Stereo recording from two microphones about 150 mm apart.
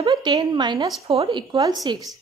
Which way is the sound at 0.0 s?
30° right (ahead or behind).